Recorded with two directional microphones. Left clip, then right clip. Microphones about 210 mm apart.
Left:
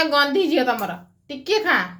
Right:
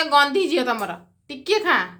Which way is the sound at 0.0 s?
15° right (ahead or behind).